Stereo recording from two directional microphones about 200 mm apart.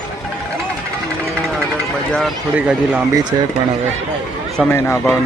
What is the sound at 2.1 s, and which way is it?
Speech, 5° right (ahead or behind).